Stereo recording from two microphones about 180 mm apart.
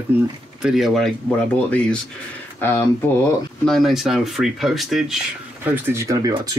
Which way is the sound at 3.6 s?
Centre (ahead or behind).